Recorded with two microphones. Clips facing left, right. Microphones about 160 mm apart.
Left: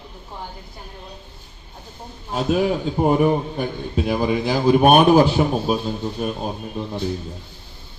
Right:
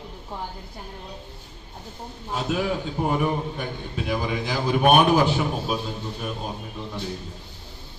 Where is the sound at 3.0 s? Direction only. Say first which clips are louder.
Left 7 dB; 35° left (ahead or behind).